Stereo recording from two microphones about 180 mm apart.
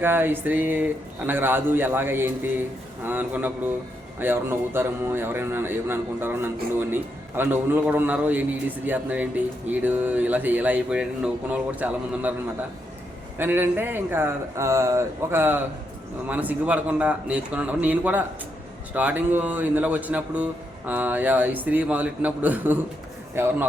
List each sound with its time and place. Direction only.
0.0 s a man's voice: 10° right (ahead or behind)
13.4 s a man's voice: 10° right (ahead or behind)